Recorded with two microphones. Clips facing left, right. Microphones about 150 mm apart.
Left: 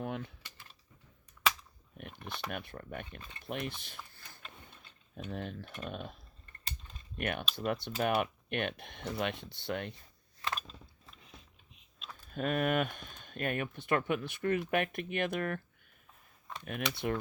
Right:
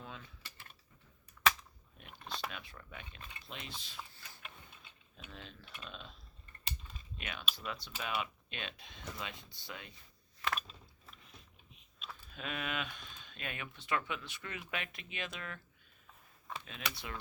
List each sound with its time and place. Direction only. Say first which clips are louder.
0.0 s typing: left 11 dB; 60° left (ahead or behind)
2.0 s a sound: left 7 dB; 65° left (ahead or behind)
2.5 s speech: left 9 dB; 55° left (ahead or behind)
7.2 s speech: left 9 dB; 60° left (ahead or behind)
11.7 s a sound: even; centre (ahead or behind)
12.3 s speech: left 10 dB; 50° left (ahead or behind)
16.6 s speech: left 12 dB; 55° left (ahead or behind)